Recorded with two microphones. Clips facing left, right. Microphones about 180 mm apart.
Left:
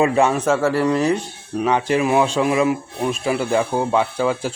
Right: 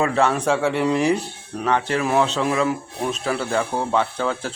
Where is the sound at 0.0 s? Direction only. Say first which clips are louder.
Left 3 dB; 15° left (ahead or behind).